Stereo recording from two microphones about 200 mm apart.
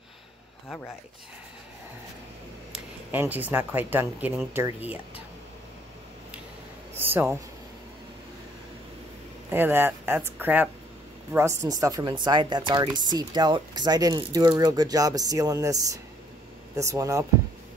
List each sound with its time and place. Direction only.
3.1 s speech: 10° right (ahead or behind)
7.0 s speech: 10° right (ahead or behind)
9.5 s speech: 10° right (ahead or behind)